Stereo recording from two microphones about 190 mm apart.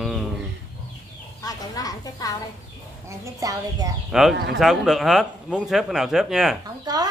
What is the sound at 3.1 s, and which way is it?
Speech, 20° right (ahead or behind).